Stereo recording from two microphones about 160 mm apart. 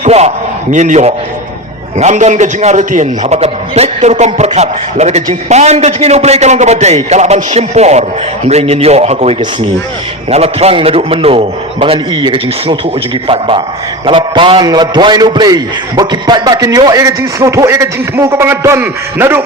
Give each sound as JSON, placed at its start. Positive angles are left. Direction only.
{"t": 0.0, "sound": "a man's voice", "side_deg": -45}